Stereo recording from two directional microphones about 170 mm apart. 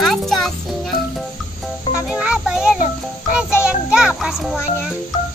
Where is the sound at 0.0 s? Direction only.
Centre (ahead or behind).